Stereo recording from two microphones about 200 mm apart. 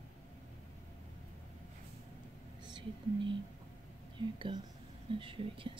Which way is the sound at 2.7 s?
20° right (ahead or behind).